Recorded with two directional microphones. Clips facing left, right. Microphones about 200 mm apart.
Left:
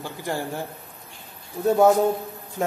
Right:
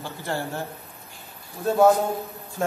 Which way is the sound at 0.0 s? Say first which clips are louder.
Left 1 dB; 15° left (ahead or behind).